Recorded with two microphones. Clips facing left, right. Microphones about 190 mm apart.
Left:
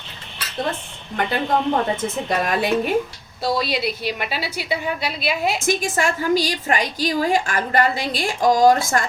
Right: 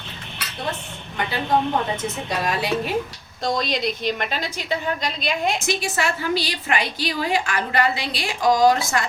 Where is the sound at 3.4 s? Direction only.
5° left (ahead or behind).